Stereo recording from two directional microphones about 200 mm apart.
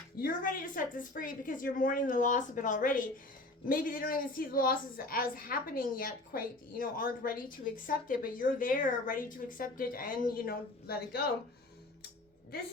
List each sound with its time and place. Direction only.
0.2 s a woman's voice: 45° left (ahead or behind)